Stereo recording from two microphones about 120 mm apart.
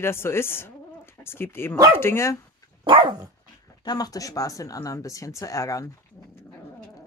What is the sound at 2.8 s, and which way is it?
Dog, 45° right (ahead or behind).